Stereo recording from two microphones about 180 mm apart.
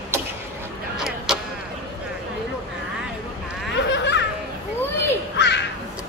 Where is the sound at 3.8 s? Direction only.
85° left.